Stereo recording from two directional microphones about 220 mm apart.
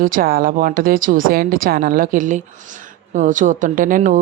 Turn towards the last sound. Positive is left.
turn(degrees=-35)  # may be behind; listen again after turning